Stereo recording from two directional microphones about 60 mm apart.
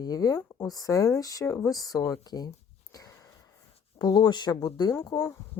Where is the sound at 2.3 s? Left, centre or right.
Left.